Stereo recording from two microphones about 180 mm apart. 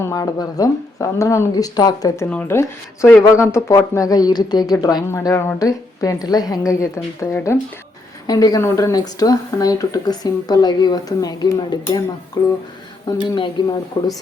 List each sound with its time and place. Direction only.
0.0 s a woman's voice: 20° left (ahead or behind)